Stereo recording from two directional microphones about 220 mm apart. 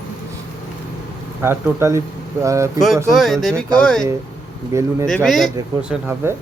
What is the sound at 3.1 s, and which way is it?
Speech, centre (ahead or behind).